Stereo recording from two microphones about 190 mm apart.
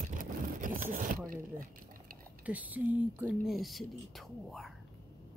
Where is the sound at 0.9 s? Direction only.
45° right (ahead or behind).